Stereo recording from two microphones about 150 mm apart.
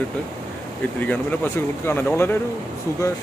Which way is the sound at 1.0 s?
10° left (ahead or behind).